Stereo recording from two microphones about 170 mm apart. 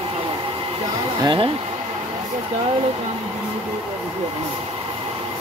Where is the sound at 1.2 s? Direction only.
30° right (ahead or behind).